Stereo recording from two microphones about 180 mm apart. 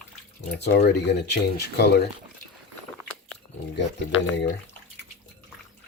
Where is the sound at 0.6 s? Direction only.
70° left (ahead or behind).